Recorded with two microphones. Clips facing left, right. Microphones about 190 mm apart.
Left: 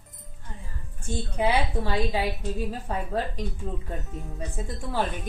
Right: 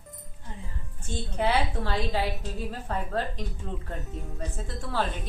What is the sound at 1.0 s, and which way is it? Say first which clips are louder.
Speech: left 2 dB; 15° left (ahead or behind).